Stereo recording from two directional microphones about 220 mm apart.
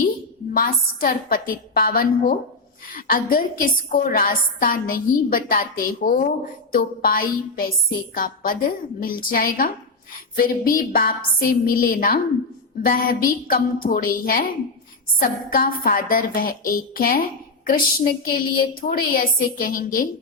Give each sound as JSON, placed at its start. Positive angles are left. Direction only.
{"t": 0.5, "sound": "a woman's voice", "side_deg": 40}